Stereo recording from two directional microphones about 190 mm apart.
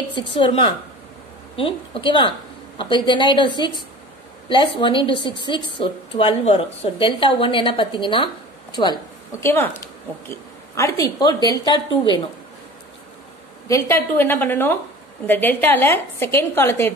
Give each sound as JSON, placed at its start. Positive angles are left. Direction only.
{"t": 0.3, "sound": "a woman's voice", "side_deg": 25}
{"t": 10.7, "sound": "a woman's voice", "side_deg": 15}
{"t": 13.7, "sound": "a woman's voice", "side_deg": 15}